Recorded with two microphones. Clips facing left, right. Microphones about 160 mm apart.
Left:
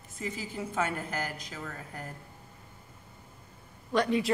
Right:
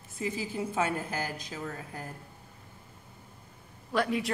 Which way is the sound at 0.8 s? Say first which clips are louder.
Even; 30° right (ahead or behind).